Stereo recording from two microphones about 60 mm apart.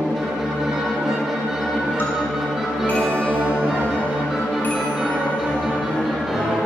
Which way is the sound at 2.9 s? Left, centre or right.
Left.